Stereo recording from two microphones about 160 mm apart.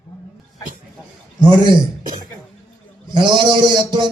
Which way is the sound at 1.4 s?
30° right (ahead or behind).